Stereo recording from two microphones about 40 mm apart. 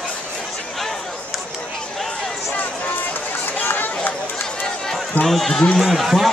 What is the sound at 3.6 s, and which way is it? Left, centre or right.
Run, left.